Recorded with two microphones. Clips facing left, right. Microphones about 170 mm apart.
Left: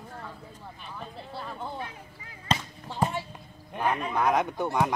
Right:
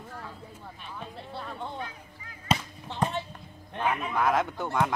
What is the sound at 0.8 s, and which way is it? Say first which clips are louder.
Speech: even; centre (ahead or behind).